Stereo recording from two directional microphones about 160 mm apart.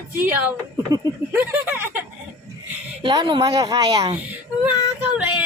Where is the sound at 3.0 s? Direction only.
30° right (ahead or behind).